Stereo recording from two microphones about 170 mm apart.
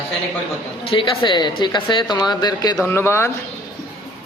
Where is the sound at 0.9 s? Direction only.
30° left (ahead or behind); by 3.3 s 15° left (ahead or behind).